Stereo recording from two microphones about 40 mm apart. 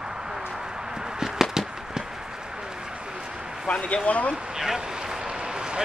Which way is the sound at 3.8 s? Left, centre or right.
Left.